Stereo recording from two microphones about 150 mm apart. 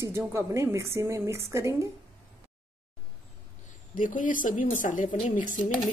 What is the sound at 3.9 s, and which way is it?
A woman's voice, 60° left (ahead or behind).